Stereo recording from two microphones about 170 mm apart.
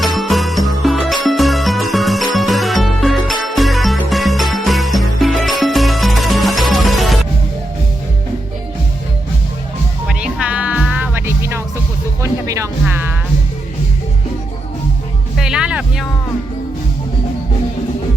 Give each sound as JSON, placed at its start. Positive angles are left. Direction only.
{"t": 0.0, "sound": "music", "side_deg": 0}
{"t": 10.1, "sound": "music", "side_deg": -5}
{"t": 15.4, "sound": "music", "side_deg": -5}